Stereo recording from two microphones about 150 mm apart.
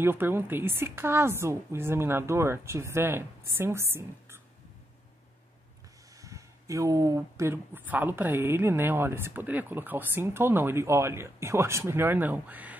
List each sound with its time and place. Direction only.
0.0 s speech: 15° right (ahead or behind)
6.1 s speech: 20° right (ahead or behind)